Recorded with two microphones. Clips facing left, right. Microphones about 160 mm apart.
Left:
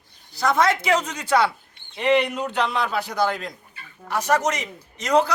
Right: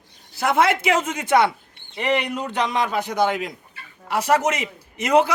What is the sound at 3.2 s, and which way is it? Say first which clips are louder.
Speech: right 2 dB; 5° right (ahead or behind).